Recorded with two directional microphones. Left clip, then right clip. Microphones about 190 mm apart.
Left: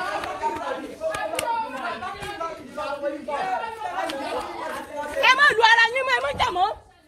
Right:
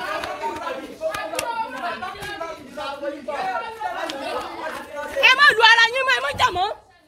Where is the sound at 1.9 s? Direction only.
25° right (ahead or behind).